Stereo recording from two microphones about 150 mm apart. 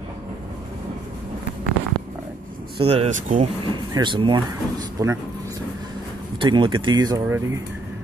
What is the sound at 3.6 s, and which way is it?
Speech, 30° right (ahead or behind).